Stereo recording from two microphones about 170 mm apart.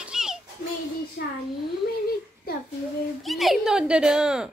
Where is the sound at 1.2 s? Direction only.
65° left (ahead or behind).